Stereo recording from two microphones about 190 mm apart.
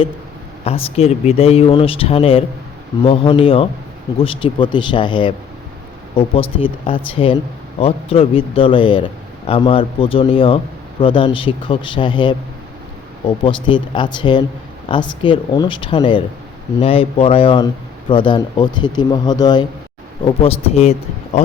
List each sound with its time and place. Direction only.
0.6 s speech: 30° left (ahead or behind)